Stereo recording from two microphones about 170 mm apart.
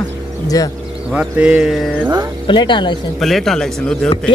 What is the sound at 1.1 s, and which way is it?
Speech, 5° right (ahead or behind).